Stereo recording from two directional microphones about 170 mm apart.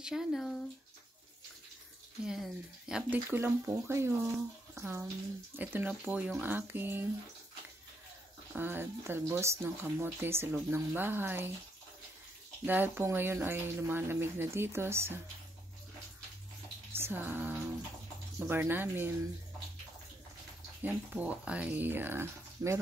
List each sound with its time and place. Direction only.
0.0 s speech: centre (ahead or behind)
2.2 s speech: 5° right (ahead or behind)
3.1 s speech: 15° right (ahead or behind)
8.5 s speech: 10° right (ahead or behind)
12.6 s speech: 10° right (ahead or behind)
16.9 s music: 15° right (ahead or behind)
18.4 s speech: 15° right (ahead or behind)
20.8 s speech: 10° right (ahead or behind)